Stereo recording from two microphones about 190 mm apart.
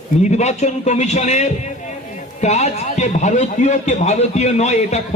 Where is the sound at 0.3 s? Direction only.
35° left (ahead or behind).